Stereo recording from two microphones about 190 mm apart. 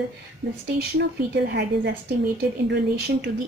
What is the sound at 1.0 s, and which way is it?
Speech, 60° right (ahead or behind).